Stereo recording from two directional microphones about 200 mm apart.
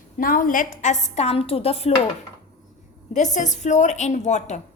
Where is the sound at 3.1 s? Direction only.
35° left (ahead or behind).